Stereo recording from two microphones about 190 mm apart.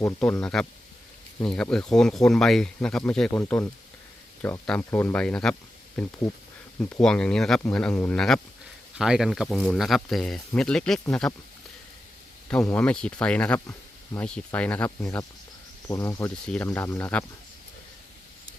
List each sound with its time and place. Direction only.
0.0 s speech: 5° left (ahead or behind)
6.7 s speech: 5° left (ahead or behind)
12.6 s speech: 5° left (ahead or behind)
15.9 s speech: 15° left (ahead or behind)